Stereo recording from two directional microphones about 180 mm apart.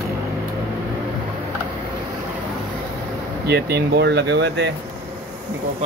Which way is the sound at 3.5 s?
65° right (ahead or behind).